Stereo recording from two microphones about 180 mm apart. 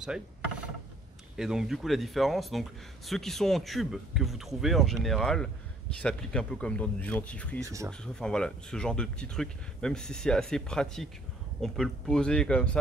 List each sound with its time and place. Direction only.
0.0 s wood: 5° right (ahead or behind)
1.3 s speech: 5° right (ahead or behind)
7.6 s speech: 15° right (ahead or behind)
8.0 s speech: 5° left (ahead or behind)